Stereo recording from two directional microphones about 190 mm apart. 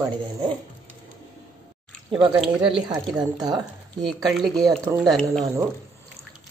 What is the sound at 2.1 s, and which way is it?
Speech, 20° right (ahead or behind).